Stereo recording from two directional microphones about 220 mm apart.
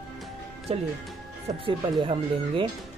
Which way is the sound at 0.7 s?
30° right (ahead or behind).